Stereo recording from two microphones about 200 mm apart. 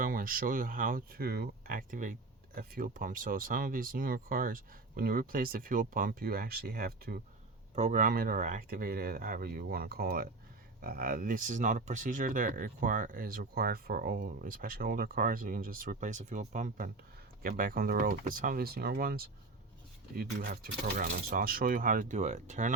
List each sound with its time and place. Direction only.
0.0 s speech: 45° right (ahead or behind)